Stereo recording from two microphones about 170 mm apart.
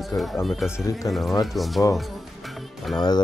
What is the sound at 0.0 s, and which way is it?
Speech, centre (ahead or behind).